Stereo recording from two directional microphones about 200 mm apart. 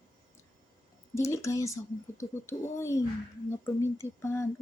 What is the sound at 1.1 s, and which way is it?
Speech, 15° left (ahead or behind).